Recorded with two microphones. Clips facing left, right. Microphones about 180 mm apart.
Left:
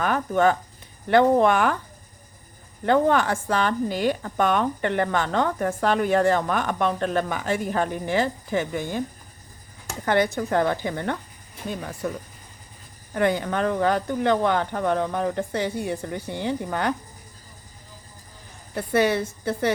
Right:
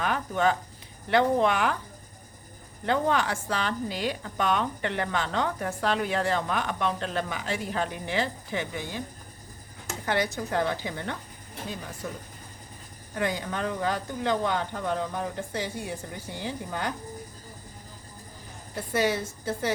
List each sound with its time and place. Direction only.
0.0 s speech: 50° left (ahead or behind)
2.8 s speech: 50° left (ahead or behind)
10.1 s speech: 55° left (ahead or behind)
18.9 s speech: 65° left (ahead or behind)